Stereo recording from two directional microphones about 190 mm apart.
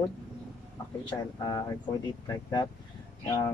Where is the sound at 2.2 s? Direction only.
20° left (ahead or behind).